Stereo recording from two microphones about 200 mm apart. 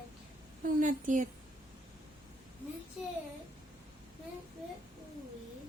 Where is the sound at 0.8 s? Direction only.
40° right (ahead or behind).